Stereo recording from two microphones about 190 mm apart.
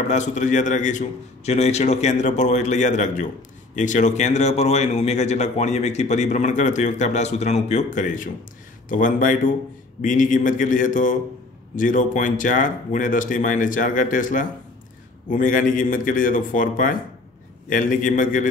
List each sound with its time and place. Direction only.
0.1 s a man's voice: 40° left (ahead or behind)